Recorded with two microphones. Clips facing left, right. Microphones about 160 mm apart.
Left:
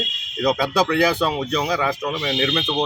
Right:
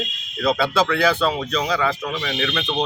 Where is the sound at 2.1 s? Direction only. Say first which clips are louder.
Left 2 dB; 25° left (ahead or behind).